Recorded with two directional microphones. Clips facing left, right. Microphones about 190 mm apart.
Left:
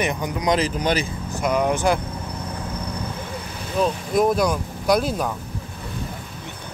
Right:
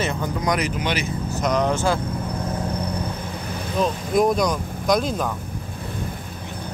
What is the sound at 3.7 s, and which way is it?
Speech, centre (ahead or behind).